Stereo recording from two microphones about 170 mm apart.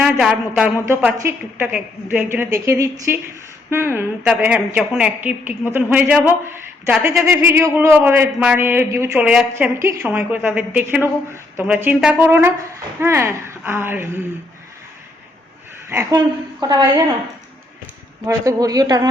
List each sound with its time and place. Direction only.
0.0 s speech: 5° right (ahead or behind)
0.9 s a woman's voice: 15° right (ahead or behind)
15.9 s a woman's voice: 20° right (ahead or behind)
18.3 s a woman's voice: 20° right (ahead or behind)